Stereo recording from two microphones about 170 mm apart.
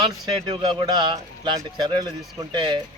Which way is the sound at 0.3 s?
25° right (ahead or behind).